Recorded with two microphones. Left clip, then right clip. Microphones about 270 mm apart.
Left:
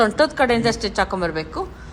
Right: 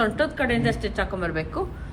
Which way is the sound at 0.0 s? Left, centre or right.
Left.